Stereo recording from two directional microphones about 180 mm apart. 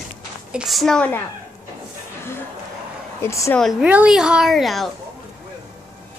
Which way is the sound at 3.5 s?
Centre (ahead or behind).